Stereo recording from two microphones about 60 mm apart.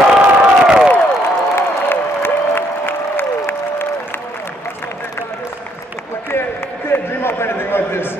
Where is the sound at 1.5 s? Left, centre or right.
Left.